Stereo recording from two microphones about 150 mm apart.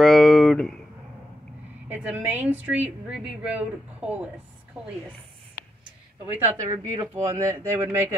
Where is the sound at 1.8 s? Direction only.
10° right (ahead or behind).